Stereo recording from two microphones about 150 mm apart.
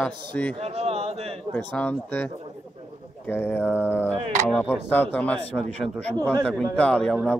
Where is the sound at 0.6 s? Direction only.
45° right (ahead or behind).